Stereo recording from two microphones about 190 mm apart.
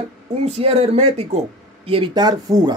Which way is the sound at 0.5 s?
30° right (ahead or behind).